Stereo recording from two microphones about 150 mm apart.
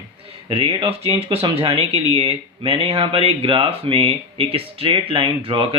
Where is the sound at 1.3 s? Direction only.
40° right (ahead or behind).